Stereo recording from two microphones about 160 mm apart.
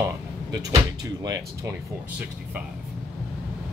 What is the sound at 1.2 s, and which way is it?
Speech, 20° right (ahead or behind).